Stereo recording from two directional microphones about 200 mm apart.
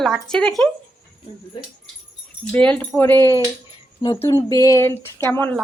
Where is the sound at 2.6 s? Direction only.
5° left (ahead or behind).